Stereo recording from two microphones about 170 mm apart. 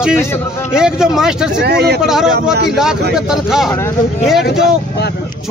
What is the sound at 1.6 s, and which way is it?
Speech, 80° right.